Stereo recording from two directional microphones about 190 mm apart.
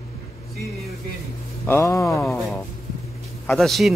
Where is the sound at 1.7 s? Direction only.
15° left (ahead or behind).